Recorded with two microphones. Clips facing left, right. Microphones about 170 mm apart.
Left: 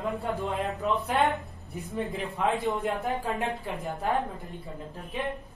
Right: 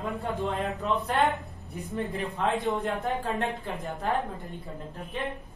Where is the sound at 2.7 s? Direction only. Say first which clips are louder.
Even; centre (ahead or behind).